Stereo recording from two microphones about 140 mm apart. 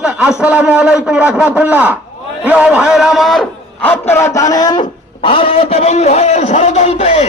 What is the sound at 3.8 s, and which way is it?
A man's voice, 15° left (ahead or behind).